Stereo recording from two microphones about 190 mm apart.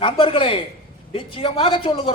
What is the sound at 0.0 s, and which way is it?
A man's voice, 25° left (ahead or behind).